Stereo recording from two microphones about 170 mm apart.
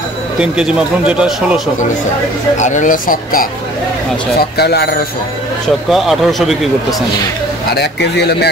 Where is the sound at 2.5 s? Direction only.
45° left (ahead or behind).